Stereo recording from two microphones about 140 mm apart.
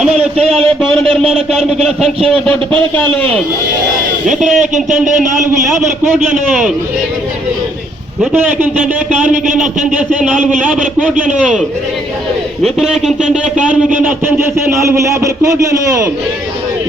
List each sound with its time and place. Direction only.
0.0 s a sound: centre (ahead or behind)
1.3 s speech: centre (ahead or behind)
2.9 s a man's voice: 15° left (ahead or behind)
4.3 s speech: centre (ahead or behind)
4.5 s a man's voice: 60° right (ahead or behind)
8.3 s a man's voice: 15° right (ahead or behind)
12.6 s a man's voice: centre (ahead or behind); by 15.5 s 25° right (ahead or behind)